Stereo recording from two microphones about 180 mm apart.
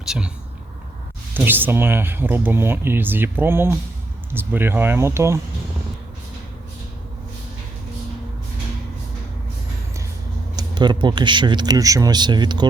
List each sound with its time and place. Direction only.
0.0 s speech: 5° right (ahead or behind)
1.3 s speech: 10° right (ahead or behind)
10.5 s speech: 25° right (ahead or behind)